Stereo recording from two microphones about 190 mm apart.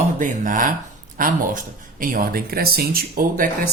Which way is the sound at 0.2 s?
45° right (ahead or behind).